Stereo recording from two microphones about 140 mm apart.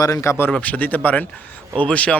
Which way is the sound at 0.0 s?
20° left (ahead or behind).